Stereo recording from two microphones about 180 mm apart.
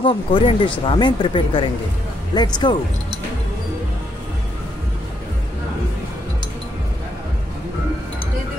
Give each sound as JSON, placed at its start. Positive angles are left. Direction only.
{"t": 0.0, "sound": "speech", "side_deg": 25}